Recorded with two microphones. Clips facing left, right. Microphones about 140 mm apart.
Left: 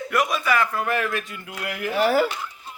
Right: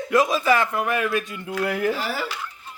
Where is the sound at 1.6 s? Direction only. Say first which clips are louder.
Right 7 dB; 35° right (ahead or behind).